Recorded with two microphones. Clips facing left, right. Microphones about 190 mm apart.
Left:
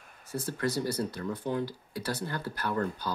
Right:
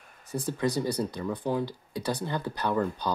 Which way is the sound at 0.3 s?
15° right (ahead or behind).